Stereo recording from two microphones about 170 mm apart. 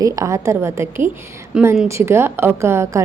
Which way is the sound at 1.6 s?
5° right (ahead or behind).